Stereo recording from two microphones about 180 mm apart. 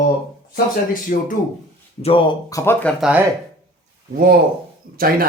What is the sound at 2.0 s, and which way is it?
Speech, 35° left (ahead or behind).